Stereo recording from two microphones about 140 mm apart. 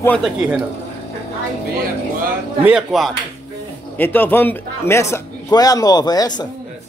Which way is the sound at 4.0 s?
15° left (ahead or behind).